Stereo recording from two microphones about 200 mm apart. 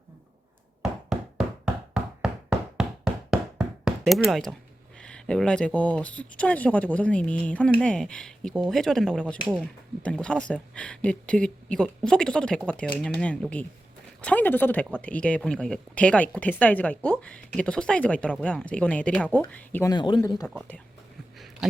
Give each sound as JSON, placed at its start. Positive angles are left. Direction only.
{"t": 1.1, "sound": "knock", "side_deg": -5}
{"t": 4.9, "sound": "speech", "side_deg": 5}
{"t": 19.9, "sound": "speech", "side_deg": 25}
{"t": 21.3, "sound": "a sound", "side_deg": 0}